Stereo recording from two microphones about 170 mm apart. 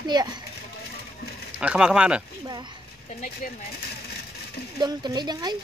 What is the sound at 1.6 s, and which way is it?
Speech, 5° right (ahead or behind).